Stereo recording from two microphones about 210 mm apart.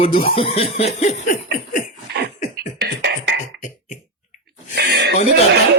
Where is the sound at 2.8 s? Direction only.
50° right (ahead or behind).